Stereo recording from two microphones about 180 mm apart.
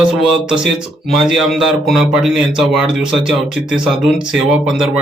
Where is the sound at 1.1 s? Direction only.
Centre (ahead or behind).